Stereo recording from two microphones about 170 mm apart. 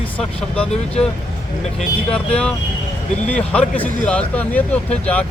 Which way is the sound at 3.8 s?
10° left (ahead or behind).